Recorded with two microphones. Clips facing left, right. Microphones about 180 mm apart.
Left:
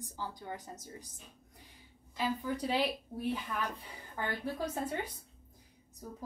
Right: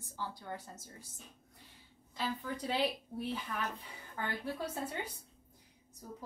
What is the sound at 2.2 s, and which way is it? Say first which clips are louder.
Speech: left 4 dB; 10° left (ahead or behind).